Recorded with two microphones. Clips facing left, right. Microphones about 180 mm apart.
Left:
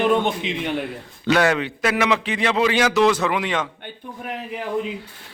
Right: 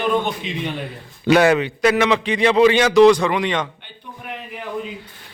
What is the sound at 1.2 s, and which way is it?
A man's voice, 10° right (ahead or behind).